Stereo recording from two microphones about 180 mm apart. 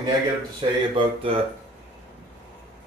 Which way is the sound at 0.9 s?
30° right (ahead or behind).